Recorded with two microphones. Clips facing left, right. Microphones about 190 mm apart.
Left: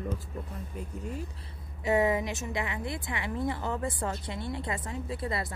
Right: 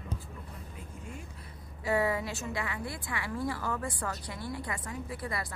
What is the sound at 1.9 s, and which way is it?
A woman's voice, 20° left (ahead or behind).